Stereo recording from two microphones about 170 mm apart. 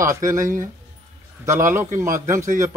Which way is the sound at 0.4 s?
50° right (ahead or behind).